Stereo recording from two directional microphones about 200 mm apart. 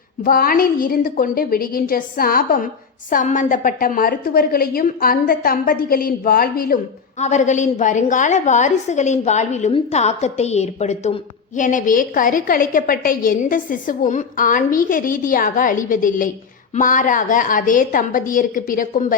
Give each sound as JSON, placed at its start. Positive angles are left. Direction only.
{"t": 0.3, "sound": "a woman's voice", "side_deg": 45}
{"t": 7.2, "sound": "a woman's voice", "side_deg": 35}